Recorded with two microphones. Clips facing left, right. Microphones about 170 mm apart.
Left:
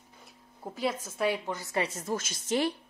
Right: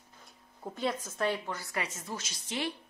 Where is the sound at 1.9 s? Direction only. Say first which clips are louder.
Left 7 dB; 40° left (ahead or behind).